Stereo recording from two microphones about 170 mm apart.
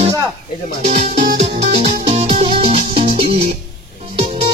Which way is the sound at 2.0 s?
35° right (ahead or behind).